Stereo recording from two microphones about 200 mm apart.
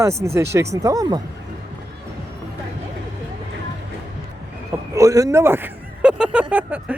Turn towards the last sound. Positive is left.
turn(degrees=-10)  # may be behind; listen again after turning